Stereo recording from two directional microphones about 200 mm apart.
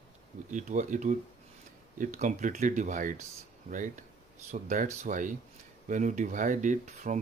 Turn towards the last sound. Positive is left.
turn(degrees=-35)  # may be behind; listen again after turning